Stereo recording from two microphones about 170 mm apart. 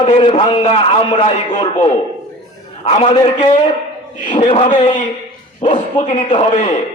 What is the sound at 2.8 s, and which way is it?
A man's voice, 35° left (ahead or behind).